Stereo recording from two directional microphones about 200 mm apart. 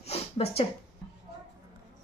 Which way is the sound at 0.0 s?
30° left (ahead or behind).